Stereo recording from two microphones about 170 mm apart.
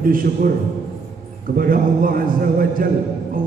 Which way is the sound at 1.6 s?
55° right (ahead or behind).